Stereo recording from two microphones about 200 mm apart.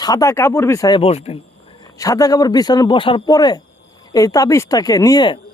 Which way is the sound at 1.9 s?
15° left (ahead or behind).